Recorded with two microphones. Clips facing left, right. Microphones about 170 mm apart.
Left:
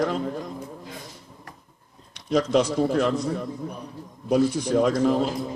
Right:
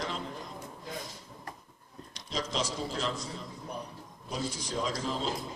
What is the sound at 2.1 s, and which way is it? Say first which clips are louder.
A man's voice: left 13 dB; 60° left (ahead or behind).